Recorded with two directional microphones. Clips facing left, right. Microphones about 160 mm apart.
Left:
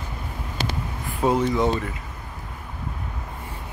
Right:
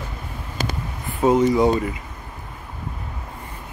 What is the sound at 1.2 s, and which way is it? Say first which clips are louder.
Speech: right 5 dB; 5° right (ahead or behind).